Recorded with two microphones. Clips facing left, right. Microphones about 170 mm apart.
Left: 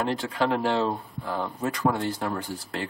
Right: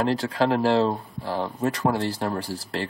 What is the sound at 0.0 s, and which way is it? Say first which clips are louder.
Speech: right 3 dB; 35° right (ahead or behind).